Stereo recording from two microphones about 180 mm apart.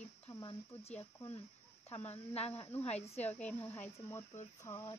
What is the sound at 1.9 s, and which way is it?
A woman's voice, 35° left (ahead or behind).